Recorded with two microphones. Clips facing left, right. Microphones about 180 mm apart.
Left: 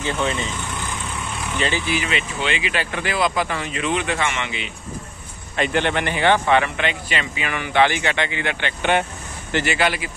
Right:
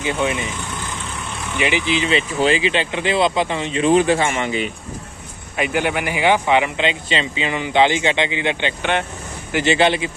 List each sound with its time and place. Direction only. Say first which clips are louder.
0.0 s speech: right 2 dB; 15° right (ahead or behind)
1.6 s a man's voice: right 4 dB; 15° right (ahead or behind); by 4.6 s 40° right (ahead or behind)
5.6 s a man's voice: even; 10° right (ahead or behind); by 10.1 s 25° right (ahead or behind)